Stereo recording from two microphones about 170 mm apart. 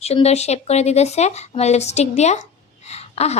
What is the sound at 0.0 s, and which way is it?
Speech, 40° left (ahead or behind).